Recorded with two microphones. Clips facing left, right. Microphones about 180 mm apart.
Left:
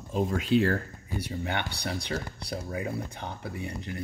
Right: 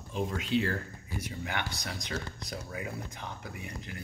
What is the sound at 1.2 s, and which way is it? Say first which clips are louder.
Speech: left 4 dB; 30° left (ahead or behind).